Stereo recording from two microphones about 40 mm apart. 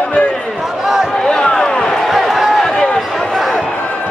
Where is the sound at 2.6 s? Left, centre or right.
Left.